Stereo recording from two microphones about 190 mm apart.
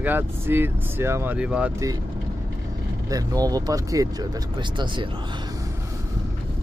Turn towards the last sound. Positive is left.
turn(degrees=-25)  # may be behind; listen again after turning